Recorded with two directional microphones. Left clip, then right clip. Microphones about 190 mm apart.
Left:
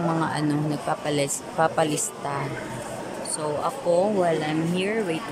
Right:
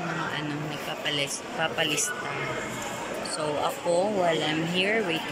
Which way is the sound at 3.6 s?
15° left (ahead or behind).